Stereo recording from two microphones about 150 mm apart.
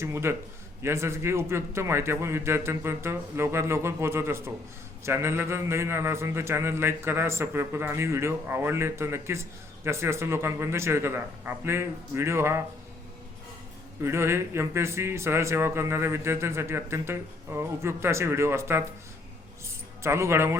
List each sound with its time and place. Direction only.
0.0 s a man's voice: 15° right (ahead or behind)
14.0 s a man's voice: 15° right (ahead or behind)
19.6 s music: 20° right (ahead or behind)